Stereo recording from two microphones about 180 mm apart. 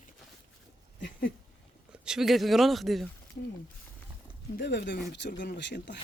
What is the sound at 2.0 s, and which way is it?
A man's voice, centre (ahead or behind).